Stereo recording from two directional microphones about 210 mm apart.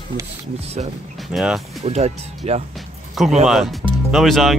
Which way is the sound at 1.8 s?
30° right (ahead or behind).